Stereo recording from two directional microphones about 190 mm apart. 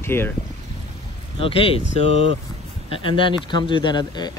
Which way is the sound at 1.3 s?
30° left (ahead or behind).